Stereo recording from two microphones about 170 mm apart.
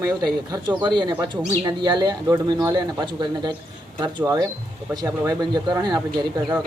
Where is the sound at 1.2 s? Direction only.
25° right (ahead or behind).